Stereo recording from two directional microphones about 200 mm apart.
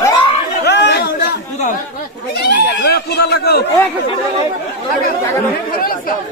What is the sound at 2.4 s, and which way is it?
Speech, 55° left (ahead or behind).